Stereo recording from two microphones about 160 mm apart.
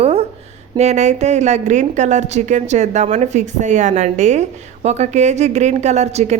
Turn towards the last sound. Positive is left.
turn(degrees=-45)  # may be behind; listen again after turning